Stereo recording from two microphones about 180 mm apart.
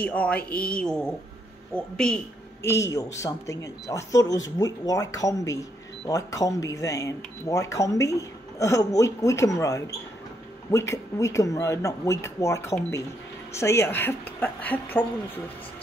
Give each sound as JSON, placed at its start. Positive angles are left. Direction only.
{"t": 0.0, "sound": "a woman's voice", "side_deg": 10}
{"t": 2.6, "sound": "a woman's voice", "side_deg": 15}